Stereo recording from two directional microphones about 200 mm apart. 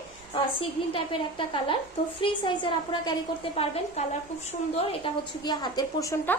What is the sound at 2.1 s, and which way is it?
A woman's voice, 25° left (ahead or behind).